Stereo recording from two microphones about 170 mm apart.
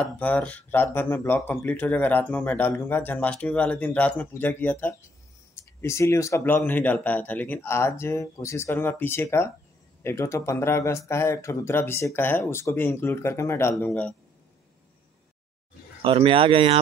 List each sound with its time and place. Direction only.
0.0 s speech: 10° left (ahead or behind)
16.0 s speech: 30° right (ahead or behind)